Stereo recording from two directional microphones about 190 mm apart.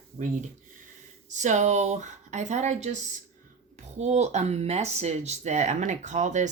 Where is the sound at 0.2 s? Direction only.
40° right (ahead or behind).